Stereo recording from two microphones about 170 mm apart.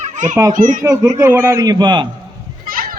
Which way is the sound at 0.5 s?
50° right (ahead or behind).